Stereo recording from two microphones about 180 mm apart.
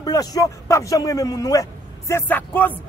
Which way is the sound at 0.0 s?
20° left (ahead or behind).